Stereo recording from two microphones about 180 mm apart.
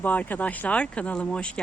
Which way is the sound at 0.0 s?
10° left (ahead or behind).